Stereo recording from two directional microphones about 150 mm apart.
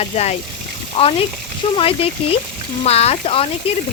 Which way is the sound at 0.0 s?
45° left (ahead or behind).